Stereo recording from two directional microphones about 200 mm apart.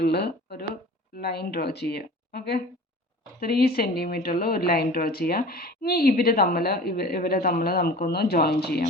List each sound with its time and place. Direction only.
0.0 s speech: 55° left (ahead or behind)